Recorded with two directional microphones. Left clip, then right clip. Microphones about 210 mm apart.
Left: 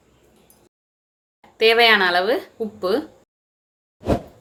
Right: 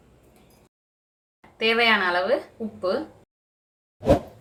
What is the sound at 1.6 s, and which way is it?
Speech, 50° left (ahead or behind).